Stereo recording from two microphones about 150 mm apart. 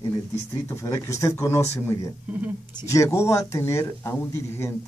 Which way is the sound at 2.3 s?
10° right (ahead or behind).